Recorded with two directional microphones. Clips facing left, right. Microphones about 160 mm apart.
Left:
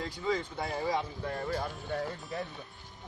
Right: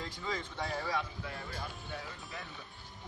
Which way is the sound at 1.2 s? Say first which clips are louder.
Left 9 dB; 45° left (ahead or behind).